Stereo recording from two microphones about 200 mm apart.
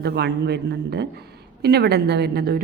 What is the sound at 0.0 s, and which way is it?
A woman's voice, 55° right (ahead or behind).